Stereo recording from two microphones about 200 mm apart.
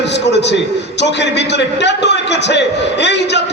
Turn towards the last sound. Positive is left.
turn(degrees=60)  # may be behind; listen again after turning